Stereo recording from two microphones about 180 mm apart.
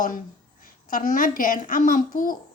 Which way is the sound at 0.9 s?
50° left (ahead or behind).